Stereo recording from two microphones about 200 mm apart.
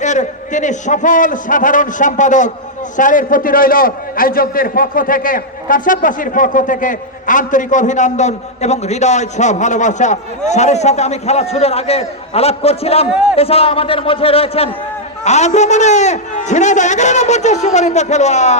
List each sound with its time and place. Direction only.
0.0 s a man's voice: 35° left (ahead or behind)